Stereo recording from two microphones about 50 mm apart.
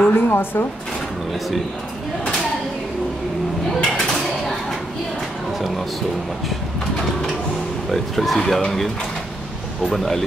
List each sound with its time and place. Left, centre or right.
0.1 s speech: left
3.8 s bird: centre
7.9 s speech: centre